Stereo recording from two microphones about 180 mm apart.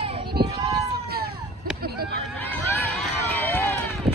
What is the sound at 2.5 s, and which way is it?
Run, 10° left (ahead or behind).